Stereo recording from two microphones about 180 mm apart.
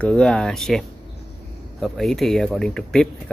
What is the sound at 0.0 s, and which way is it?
Speech, 5° left (ahead or behind).